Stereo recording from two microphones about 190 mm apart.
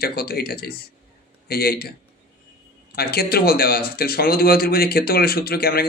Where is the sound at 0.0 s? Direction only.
55° left (ahead or behind).